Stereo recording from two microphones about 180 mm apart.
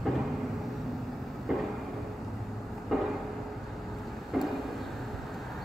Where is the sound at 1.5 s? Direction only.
Centre (ahead or behind).